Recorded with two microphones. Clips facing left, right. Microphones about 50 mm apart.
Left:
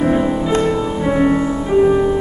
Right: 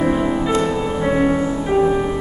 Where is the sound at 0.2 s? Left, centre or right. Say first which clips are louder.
Left 2 dB; centre.